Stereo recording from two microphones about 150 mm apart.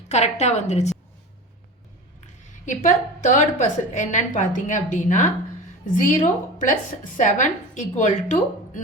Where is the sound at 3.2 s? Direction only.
55° left (ahead or behind).